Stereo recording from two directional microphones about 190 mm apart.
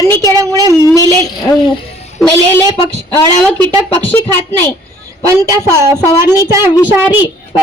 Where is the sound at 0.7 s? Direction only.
15° left (ahead or behind).